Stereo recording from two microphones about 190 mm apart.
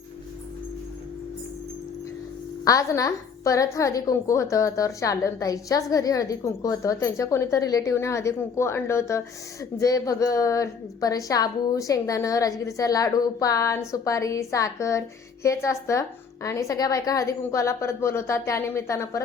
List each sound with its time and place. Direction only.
2.6 s a woman's voice: 20° left (ahead or behind)